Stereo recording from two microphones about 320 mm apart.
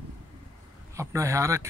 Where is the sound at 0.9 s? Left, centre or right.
Centre.